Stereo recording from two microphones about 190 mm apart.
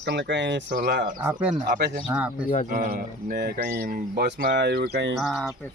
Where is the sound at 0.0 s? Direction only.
70° right (ahead or behind).